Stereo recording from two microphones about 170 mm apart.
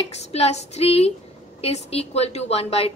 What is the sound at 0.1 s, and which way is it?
A woman's voice, 40° left (ahead or behind).